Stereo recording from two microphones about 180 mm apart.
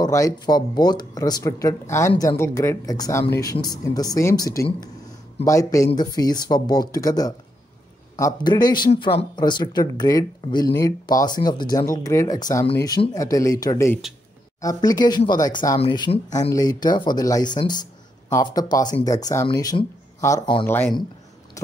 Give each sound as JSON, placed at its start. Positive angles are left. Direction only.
{"t": 0.0, "sound": "speech", "side_deg": 20}
{"t": 20.6, "sound": "speech", "side_deg": 10}